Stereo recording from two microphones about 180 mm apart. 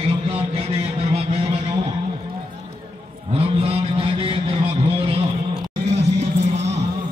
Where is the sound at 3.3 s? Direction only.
35° right (ahead or behind).